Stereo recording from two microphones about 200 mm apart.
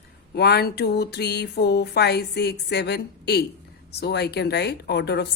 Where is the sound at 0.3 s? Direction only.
55° left (ahead or behind).